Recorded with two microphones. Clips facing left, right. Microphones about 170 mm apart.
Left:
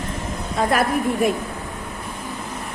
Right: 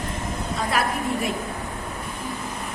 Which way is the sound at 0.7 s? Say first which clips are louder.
Left 4 dB; 50° left (ahead or behind).